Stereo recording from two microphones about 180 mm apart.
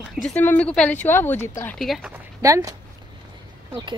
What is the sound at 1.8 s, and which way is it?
Speech, 5° right (ahead or behind).